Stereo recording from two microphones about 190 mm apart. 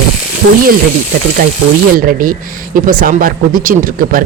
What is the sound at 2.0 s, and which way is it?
Speech, 45° right (ahead or behind).